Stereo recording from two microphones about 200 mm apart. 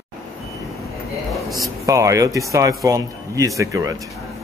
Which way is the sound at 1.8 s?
15° right (ahead or behind).